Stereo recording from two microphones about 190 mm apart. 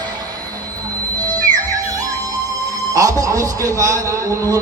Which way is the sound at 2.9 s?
20° right (ahead or behind).